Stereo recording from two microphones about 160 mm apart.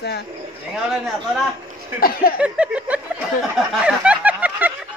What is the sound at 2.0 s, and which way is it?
Speech, 70° left (ahead or behind).